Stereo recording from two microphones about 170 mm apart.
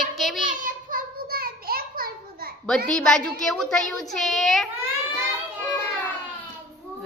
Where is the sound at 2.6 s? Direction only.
5° left (ahead or behind).